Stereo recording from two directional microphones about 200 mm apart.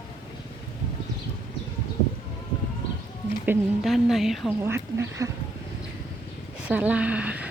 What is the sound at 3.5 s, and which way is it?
Speech, centre (ahead or behind).